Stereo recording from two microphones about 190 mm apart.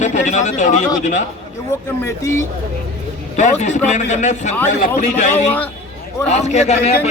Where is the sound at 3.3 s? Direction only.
40° left (ahead or behind).